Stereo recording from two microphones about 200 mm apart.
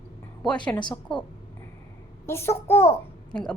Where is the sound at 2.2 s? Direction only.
15° left (ahead or behind).